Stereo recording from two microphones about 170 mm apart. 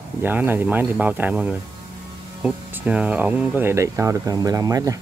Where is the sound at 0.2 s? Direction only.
10° right (ahead or behind).